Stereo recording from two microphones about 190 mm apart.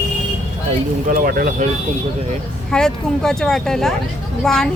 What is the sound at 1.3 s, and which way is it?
Speech, 50° right (ahead or behind).